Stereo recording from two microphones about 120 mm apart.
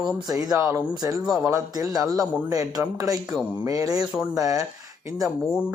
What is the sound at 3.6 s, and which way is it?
Speech, 30° right (ahead or behind).